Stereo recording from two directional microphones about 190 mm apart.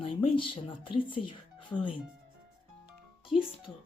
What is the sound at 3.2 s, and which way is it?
Speech, 30° left (ahead or behind).